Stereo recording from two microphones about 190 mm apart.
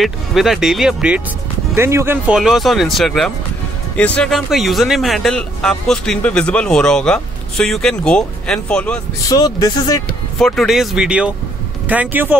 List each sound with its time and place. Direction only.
0.0 s speech: centre (ahead or behind)
9.3 s speech: 20° left (ahead or behind)
10.4 s speech: centre (ahead or behind)